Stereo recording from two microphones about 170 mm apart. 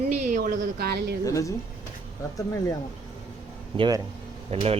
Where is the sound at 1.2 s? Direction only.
20° left (ahead or behind).